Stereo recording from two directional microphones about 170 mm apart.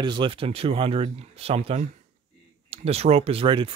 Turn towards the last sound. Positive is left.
turn(degrees=-30)  # may be behind; listen again after turning